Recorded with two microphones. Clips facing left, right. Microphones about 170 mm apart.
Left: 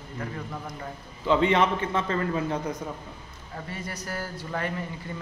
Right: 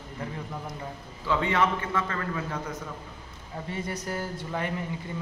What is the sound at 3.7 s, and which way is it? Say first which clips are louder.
Speech: right 3 dB; 20° right (ahead or behind).